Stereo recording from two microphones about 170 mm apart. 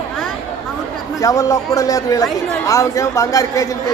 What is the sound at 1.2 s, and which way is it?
A man's voice, 20° left (ahead or behind).